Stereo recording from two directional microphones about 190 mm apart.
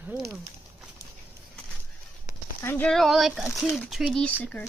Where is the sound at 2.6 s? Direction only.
10° left (ahead or behind).